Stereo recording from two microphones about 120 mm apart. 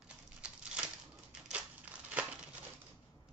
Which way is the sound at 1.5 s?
10° right (ahead or behind).